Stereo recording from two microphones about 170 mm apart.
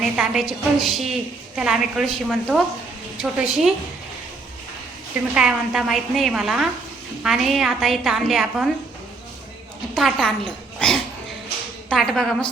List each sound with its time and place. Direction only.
0.0 s a woman's voice: centre (ahead or behind)
5.3 s a woman's voice: 5° right (ahead or behind)
9.9 s a woman's voice: centre (ahead or behind)